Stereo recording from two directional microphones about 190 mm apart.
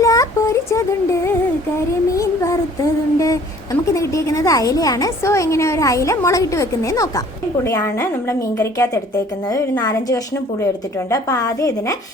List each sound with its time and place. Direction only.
0.0 s child singing: 15° left (ahead or behind)
3.2 s a woman's voice: 15° left (ahead or behind)